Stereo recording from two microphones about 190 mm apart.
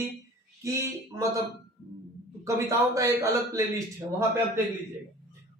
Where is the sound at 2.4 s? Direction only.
15° right (ahead or behind).